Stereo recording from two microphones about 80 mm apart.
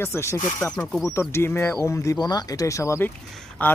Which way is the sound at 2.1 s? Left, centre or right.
Left.